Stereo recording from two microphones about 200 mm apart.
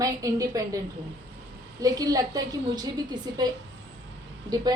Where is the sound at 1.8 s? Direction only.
20° right (ahead or behind).